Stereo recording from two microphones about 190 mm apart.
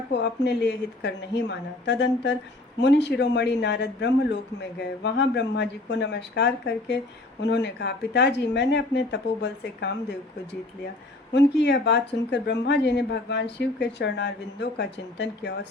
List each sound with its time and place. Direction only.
0.1 s speech: 65° left (ahead or behind)
11.3 s speech: 65° left (ahead or behind)